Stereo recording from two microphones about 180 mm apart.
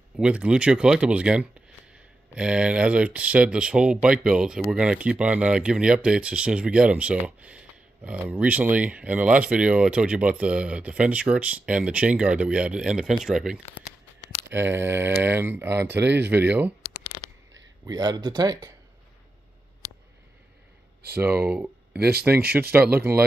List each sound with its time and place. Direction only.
0.2 s speech: 5° right (ahead or behind)
17.8 s speech: 20° right (ahead or behind)
21.2 s speech: 10° right (ahead or behind)
21.9 s speech: 60° right (ahead or behind)
22.5 s speech: 10° right (ahead or behind)